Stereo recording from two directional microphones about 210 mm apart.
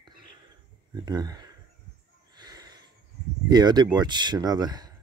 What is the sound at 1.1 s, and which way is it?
Speech, 20° right (ahead or behind).